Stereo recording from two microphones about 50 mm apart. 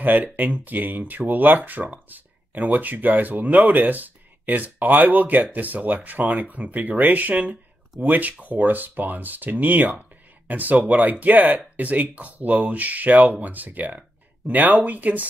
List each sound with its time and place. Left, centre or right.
0.0 s speech: right